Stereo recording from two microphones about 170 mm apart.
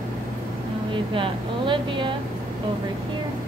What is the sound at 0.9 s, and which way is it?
Speech, 30° right (ahead or behind).